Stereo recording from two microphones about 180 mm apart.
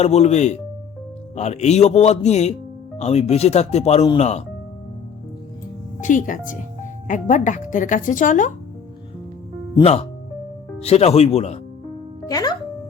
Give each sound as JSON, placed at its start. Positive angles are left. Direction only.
{"t": 0.0, "sound": "speech", "side_deg": 35}
{"t": 6.0, "sound": "speech", "side_deg": 45}
{"t": 9.8, "sound": "speech", "side_deg": 35}
{"t": 12.3, "sound": "speech", "side_deg": 20}